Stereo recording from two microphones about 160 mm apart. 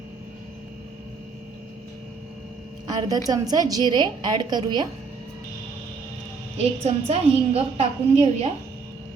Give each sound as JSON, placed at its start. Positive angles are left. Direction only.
{"t": 2.8, "sound": "a sound", "side_deg": -25}
{"t": 3.2, "sound": "a woman's voice", "side_deg": -25}
{"t": 6.6, "sound": "a woman's voice", "side_deg": -40}